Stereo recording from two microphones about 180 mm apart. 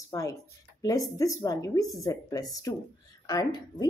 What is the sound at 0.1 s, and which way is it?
A woman's voice, 20° left (ahead or behind).